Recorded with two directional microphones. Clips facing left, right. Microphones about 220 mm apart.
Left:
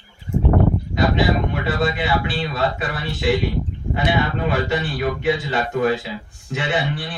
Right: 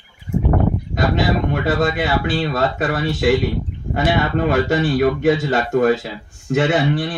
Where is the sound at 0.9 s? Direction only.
45° right (ahead or behind).